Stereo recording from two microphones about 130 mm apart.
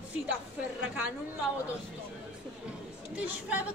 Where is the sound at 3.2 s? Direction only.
10° right (ahead or behind).